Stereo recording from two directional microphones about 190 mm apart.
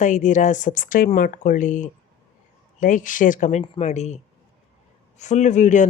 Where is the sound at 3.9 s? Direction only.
35° left (ahead or behind).